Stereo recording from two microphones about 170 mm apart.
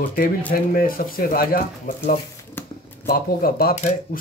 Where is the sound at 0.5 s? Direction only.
60° left (ahead or behind).